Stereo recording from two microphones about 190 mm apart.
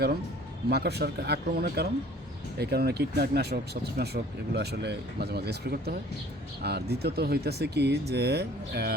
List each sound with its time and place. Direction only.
0.7 s speech: 60° right (ahead or behind)